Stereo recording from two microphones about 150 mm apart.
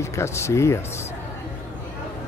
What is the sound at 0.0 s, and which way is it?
Speech, 20° left (ahead or behind).